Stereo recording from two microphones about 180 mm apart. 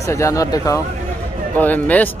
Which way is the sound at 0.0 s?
15° left (ahead or behind).